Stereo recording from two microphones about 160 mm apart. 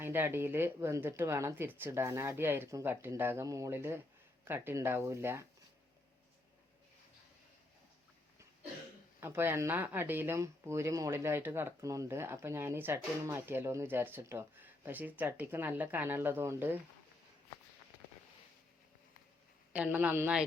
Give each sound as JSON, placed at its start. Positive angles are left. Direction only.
{"t": 0.0, "sound": "speech", "side_deg": -15}
{"t": 9.2, "sound": "speech", "side_deg": -15}
{"t": 19.7, "sound": "speech", "side_deg": -10}